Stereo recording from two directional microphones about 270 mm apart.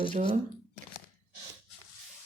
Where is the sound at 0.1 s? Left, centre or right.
Right.